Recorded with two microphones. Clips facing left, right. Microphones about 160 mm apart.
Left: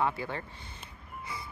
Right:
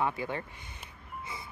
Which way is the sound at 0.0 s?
20° right (ahead or behind).